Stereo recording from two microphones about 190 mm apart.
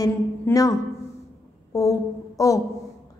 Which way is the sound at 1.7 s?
15° left (ahead or behind).